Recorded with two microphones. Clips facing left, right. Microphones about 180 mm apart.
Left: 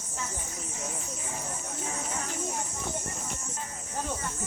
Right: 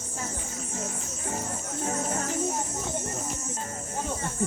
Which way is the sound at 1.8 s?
45° right (ahead or behind).